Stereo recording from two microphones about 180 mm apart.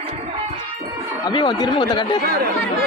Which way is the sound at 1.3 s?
25° left (ahead or behind).